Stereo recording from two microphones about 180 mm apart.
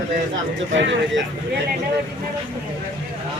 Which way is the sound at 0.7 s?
90° right.